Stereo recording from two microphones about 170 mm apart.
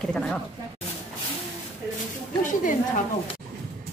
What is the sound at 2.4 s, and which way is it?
Speech, 50° left (ahead or behind).